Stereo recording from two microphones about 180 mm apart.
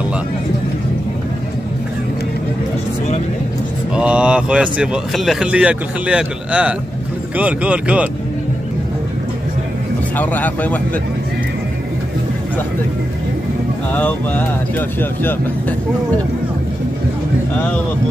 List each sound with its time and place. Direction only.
3.9 s speech: 5° right (ahead or behind)
10.1 s speech: 10° left (ahead or behind)
13.9 s speech: 10° left (ahead or behind)